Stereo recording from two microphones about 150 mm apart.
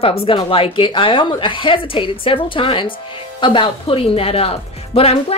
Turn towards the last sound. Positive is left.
turn(degrees=40)  # may be behind; listen again after turning